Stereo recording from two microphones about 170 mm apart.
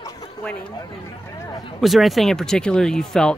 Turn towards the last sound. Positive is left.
turn(degrees=5)  # may be behind; listen again after turning